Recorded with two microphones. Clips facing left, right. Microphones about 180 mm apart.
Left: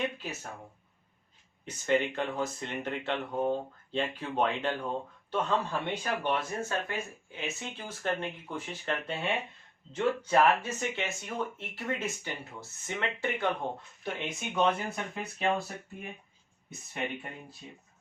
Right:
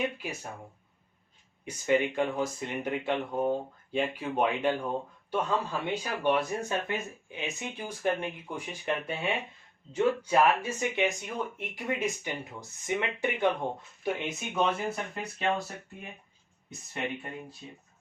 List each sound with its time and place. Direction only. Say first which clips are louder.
0.2 s speech: right 2 dB; 10° right (ahead or behind)
1.6 s speech: right 2 dB; 10° right (ahead or behind)